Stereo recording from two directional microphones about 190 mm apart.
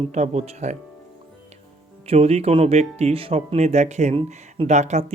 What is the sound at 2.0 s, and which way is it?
Speech, 35° right (ahead or behind).